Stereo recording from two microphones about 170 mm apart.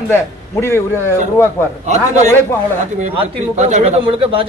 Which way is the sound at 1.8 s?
45° right (ahead or behind).